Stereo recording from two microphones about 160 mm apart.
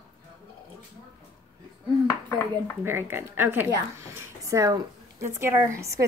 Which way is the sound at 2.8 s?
15° right (ahead or behind).